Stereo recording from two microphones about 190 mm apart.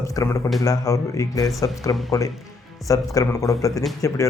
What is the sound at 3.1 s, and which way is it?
Speech, 20° left (ahead or behind).